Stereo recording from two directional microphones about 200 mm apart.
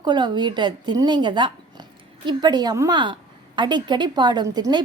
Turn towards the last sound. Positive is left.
turn(degrees=-20)  # may be behind; listen again after turning